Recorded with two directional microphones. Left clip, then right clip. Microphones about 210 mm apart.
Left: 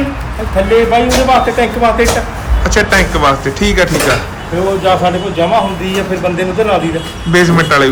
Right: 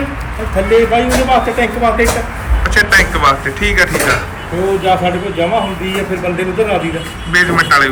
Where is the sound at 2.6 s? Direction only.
20° left (ahead or behind).